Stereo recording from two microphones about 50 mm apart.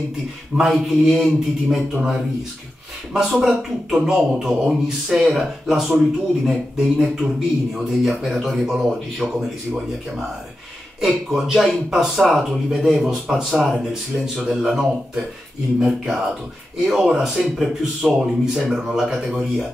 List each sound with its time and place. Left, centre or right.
0.6 s speech: centre
2.0 s a man's voice: centre
11.0 s a man's voice: centre